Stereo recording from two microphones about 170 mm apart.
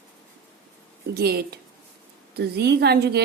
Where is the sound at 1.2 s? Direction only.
65° right (ahead or behind).